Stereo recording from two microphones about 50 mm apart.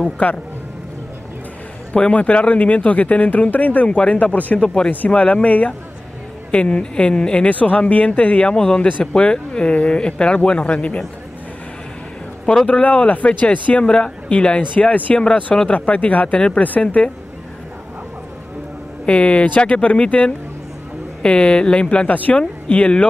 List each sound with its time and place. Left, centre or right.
0.2 s speech: left
2.0 s speech: left
4.6 s speech: centre
7.4 s speech: left
8.5 s speech: centre
12.6 s speech: left
13.8 s speech: centre
14.9 s speech: left
16.3 s speech: centre
16.6 s speech: left
19.0 s speech: left